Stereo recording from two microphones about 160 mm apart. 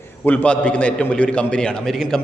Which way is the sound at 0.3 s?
10° left (ahead or behind).